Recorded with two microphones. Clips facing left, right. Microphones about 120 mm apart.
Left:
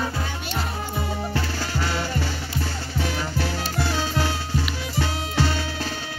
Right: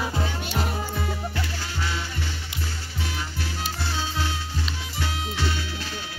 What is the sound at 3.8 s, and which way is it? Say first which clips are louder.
Music: left 5 dB; 90° left.